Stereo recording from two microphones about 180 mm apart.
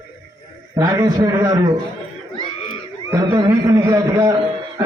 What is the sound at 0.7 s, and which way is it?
A man's voice, 20° right (ahead or behind).